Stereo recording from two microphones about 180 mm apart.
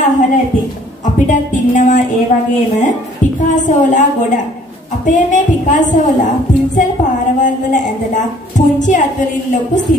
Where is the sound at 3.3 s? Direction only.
45° left (ahead or behind).